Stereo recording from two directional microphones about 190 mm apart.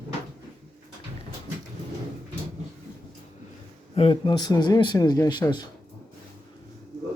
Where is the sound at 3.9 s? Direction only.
30° left (ahead or behind).